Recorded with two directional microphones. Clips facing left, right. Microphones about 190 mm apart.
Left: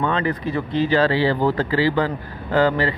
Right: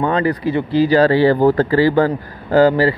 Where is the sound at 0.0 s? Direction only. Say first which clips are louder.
Right 5 dB; 35° right (ahead or behind).